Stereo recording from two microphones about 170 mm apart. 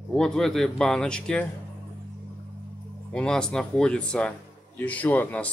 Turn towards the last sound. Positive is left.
turn(degrees=10)  # may be behind; listen again after turning